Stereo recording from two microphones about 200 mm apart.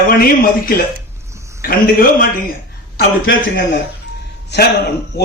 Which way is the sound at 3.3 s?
65° left (ahead or behind).